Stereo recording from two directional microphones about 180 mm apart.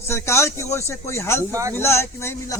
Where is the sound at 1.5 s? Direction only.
15° right (ahead or behind).